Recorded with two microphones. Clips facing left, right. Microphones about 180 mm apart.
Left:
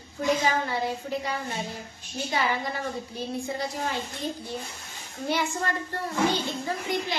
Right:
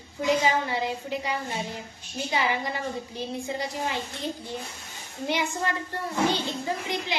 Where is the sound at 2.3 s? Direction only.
15° right (ahead or behind).